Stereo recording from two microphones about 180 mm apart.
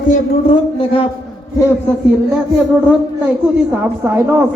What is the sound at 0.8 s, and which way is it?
Speech, 30° left (ahead or behind).